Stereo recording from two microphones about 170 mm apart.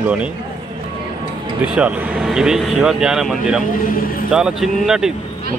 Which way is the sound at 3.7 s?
55° left (ahead or behind).